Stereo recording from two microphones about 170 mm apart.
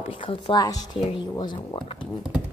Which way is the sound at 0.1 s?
30° left (ahead or behind).